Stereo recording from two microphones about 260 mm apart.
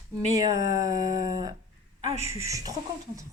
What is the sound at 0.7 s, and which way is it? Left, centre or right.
Speech, centre.